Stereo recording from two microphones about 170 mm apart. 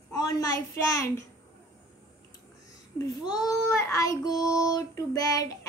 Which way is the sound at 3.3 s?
20° left (ahead or behind).